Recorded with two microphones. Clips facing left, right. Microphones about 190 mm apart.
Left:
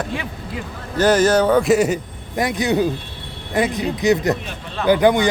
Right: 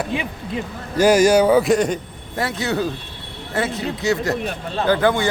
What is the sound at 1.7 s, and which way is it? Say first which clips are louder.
A man's voice: left 2 dB; 5° left (ahead or behind).